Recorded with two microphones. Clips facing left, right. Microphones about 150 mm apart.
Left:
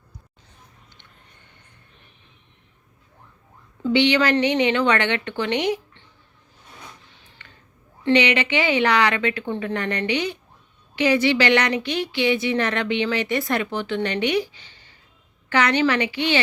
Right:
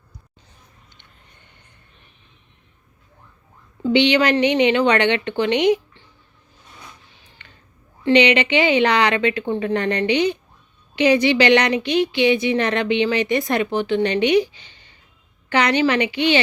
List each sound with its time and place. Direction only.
3.9 s speech: 20° right (ahead or behind)
8.0 s a woman's voice: 20° right (ahead or behind)